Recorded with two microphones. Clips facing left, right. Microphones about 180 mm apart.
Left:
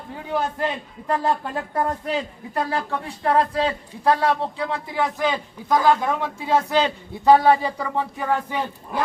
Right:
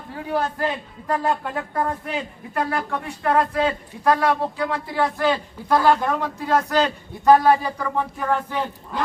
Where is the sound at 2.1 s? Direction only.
30° left (ahead or behind); by 6.1 s 15° left (ahead or behind).